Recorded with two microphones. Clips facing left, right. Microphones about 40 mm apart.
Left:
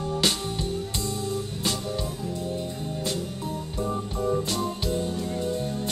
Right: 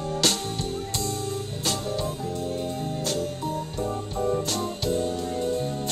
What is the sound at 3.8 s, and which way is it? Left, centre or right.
Organ, centre.